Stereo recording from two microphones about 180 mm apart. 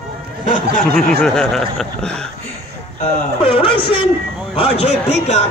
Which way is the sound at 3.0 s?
30° left (ahead or behind).